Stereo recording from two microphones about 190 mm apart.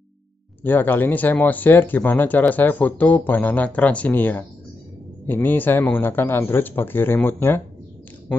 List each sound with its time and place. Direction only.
0.7 s speech: 10° left (ahead or behind)